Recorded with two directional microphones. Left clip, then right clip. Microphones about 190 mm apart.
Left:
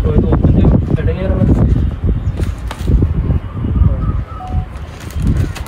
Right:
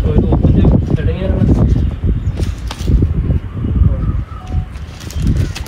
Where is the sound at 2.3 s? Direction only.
Centre (ahead or behind).